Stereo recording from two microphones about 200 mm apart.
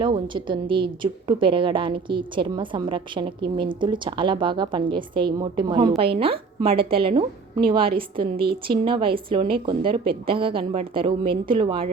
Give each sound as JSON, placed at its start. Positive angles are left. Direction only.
{"t": 0.0, "sound": "a woman's voice", "side_deg": -25}